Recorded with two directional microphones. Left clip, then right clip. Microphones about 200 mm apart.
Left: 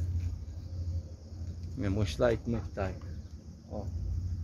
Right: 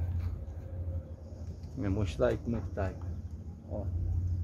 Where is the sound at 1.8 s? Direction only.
25° left (ahead or behind); by 2.9 s 40° left (ahead or behind).